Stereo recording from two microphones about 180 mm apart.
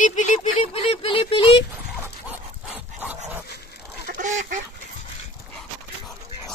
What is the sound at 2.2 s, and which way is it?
Dog, 10° right (ahead or behind).